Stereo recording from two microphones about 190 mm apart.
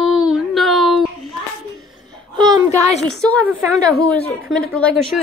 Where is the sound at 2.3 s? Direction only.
20° right (ahead or behind).